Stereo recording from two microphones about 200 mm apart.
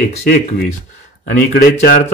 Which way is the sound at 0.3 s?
50° left (ahead or behind).